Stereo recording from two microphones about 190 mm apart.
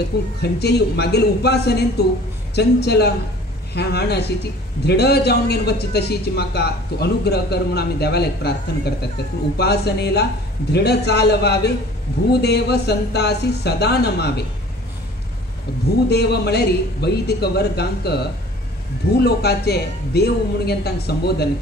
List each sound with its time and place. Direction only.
0.4 s a man's voice: 60° left (ahead or behind)
16.1 s a man's voice: 60° left (ahead or behind)
19.2 s a man's voice: 60° left (ahead or behind)